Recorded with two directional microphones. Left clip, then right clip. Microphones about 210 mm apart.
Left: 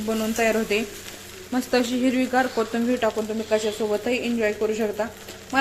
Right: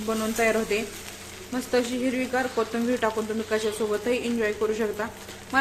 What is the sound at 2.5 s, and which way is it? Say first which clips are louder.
Speech: left 2 dB; 10° left (ahead or behind).